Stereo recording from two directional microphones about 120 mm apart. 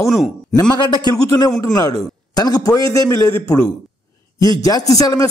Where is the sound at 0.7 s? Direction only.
35° left (ahead or behind).